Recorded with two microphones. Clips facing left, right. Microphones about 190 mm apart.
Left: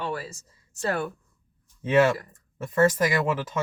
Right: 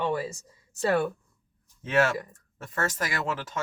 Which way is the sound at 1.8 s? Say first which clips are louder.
Left 4 dB; 15° left (ahead or behind).